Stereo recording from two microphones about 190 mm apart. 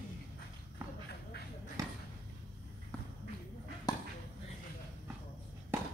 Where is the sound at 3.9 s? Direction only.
20° left (ahead or behind).